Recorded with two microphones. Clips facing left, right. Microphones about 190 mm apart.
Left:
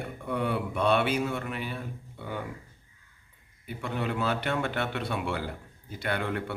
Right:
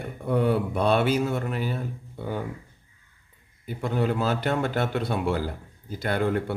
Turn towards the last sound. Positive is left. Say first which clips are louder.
# right 6 dB
turn(degrees=-40)  # may be behind; listen again after turning